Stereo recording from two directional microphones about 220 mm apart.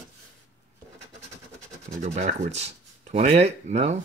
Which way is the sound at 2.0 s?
30° right (ahead or behind).